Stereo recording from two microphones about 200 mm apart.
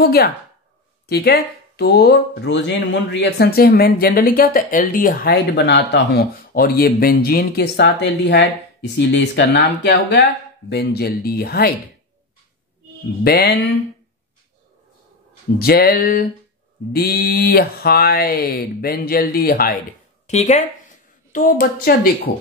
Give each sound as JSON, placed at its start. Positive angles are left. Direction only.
{"t": 0.0, "sound": "speech", "side_deg": 50}
{"t": 13.2, "sound": "speech", "side_deg": 50}
{"t": 15.6, "sound": "speech", "side_deg": 50}
{"t": 20.2, "sound": "speech", "side_deg": 35}